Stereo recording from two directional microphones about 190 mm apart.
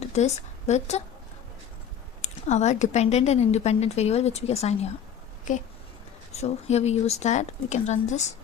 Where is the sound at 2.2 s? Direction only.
35° left (ahead or behind).